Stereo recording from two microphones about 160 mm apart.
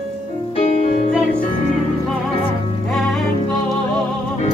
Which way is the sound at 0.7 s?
50° left (ahead or behind).